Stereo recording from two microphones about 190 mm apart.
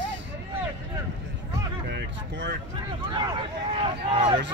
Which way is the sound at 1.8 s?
65° right (ahead or behind).